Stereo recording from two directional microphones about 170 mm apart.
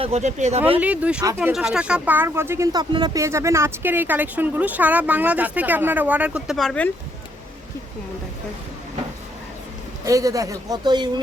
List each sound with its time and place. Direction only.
0.0 s speech: 40° right (ahead or behind)
0.8 s speech: 10° right (ahead or behind)
10.1 s speech: 20° right (ahead or behind)